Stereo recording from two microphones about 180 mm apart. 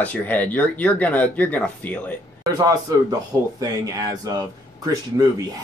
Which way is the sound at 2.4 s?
20° right (ahead or behind).